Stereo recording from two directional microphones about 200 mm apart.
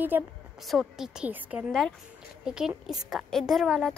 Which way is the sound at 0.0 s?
5° right (ahead or behind).